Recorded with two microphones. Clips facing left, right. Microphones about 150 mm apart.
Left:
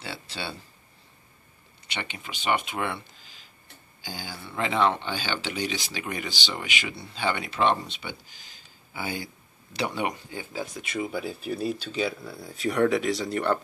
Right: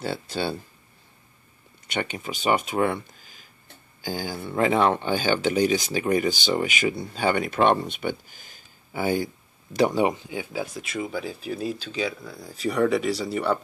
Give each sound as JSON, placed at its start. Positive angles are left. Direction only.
{"t": 0.0, "sound": "speech", "side_deg": -50}
{"t": 1.9, "sound": "speech", "side_deg": -45}
{"t": 10.3, "sound": "speech", "side_deg": -10}